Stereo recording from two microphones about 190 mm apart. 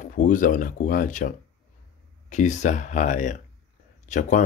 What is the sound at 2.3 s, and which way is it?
Speech, 40° left (ahead or behind).